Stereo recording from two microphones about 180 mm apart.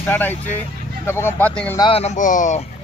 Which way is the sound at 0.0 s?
10° left (ahead or behind).